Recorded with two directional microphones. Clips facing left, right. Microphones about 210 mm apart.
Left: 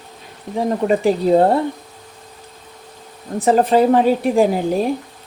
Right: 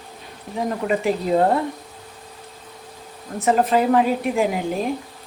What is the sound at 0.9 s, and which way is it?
Speech, 35° left (ahead or behind).